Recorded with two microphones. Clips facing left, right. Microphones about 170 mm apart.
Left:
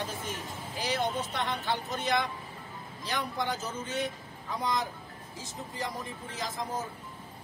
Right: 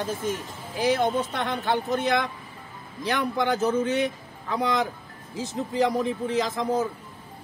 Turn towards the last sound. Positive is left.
turn(degrees=-75)  # may be behind; listen again after turning